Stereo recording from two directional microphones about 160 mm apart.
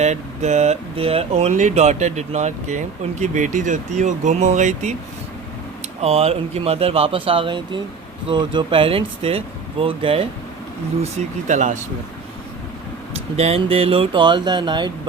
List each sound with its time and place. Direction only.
0.0 s speech: 45° right (ahead or behind)
6.0 s speech: 40° right (ahead or behind)
11.0 s speech: 45° right (ahead or behind)
13.3 s speech: 40° right (ahead or behind)